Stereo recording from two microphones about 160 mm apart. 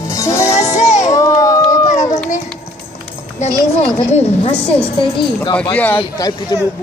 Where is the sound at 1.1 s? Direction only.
20° left (ahead or behind).